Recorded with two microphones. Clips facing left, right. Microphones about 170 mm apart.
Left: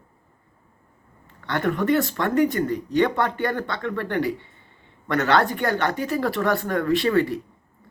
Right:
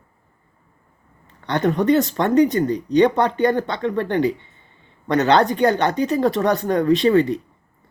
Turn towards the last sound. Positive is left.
turn(degrees=-20)  # may be behind; listen again after turning